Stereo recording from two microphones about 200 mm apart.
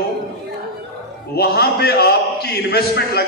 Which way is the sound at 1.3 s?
50° left (ahead or behind).